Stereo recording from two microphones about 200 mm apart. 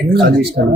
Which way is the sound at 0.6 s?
50° right (ahead or behind).